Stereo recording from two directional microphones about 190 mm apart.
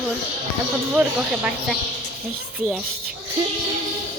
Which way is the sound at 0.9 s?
5° right (ahead or behind).